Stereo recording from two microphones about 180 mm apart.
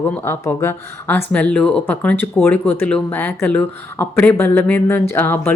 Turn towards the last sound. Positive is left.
turn(degrees=10)  # may be behind; listen again after turning